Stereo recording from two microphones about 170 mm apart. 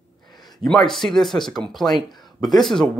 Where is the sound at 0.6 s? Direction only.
Centre (ahead or behind).